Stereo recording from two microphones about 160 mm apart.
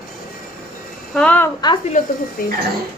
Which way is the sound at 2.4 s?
65° left (ahead or behind).